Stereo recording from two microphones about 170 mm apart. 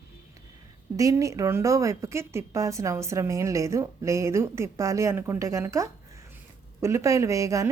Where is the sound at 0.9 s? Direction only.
20° right (ahead or behind).